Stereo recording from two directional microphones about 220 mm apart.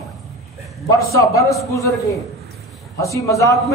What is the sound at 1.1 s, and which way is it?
A man's voice, 15° left (ahead or behind).